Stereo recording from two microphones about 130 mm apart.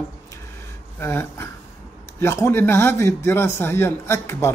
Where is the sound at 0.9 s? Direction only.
20° left (ahead or behind).